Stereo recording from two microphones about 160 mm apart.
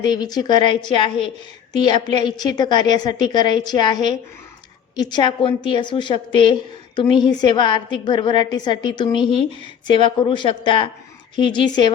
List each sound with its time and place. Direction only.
0.0 s a woman's voice: 25° left (ahead or behind)